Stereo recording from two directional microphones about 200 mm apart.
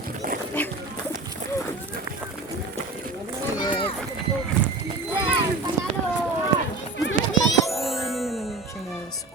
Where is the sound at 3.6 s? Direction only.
25° left (ahead or behind).